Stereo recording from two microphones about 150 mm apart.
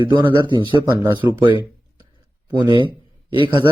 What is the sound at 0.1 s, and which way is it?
Speech, 30° right (ahead or behind).